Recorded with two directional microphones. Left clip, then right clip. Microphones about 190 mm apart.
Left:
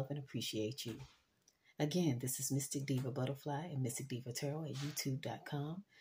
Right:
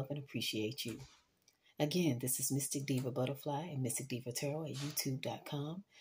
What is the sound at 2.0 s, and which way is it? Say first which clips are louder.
Speech: right 2 dB; 55° left (ahead or behind).